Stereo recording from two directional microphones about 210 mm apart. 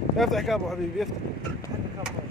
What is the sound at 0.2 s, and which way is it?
Speech, centre (ahead or behind).